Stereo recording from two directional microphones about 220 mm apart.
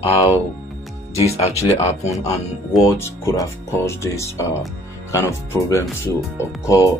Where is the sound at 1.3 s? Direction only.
30° left (ahead or behind).